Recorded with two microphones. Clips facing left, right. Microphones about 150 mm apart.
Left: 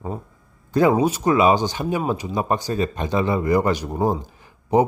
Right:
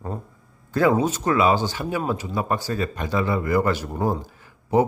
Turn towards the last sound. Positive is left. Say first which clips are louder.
# left 2 dB
turn(degrees=20)  # may be behind; listen again after turning